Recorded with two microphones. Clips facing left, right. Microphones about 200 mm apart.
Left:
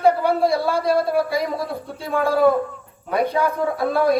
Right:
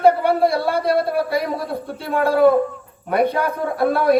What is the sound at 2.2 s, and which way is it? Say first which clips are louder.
A man's voice: right 3 dB; 60° right (ahead or behind).